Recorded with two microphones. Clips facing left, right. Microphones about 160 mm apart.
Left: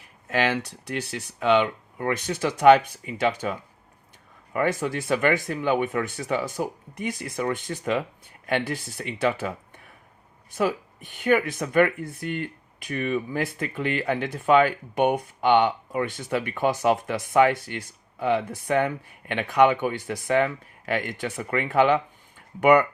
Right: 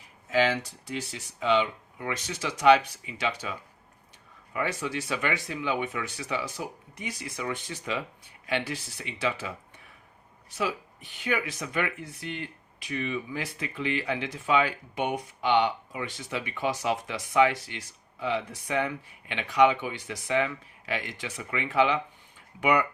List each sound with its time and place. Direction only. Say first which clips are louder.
0.3 s speech: left 1 dB; 65° left (ahead or behind)
4.5 s speech: left 6 dB; 50° left (ahead or behind)